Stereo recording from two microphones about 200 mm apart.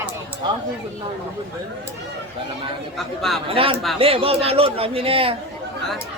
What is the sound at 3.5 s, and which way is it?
Speech, 25° right (ahead or behind).